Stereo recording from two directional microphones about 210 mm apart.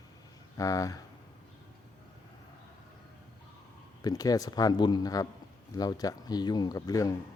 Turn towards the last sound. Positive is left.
turn(degrees=15)  # may be behind; listen again after turning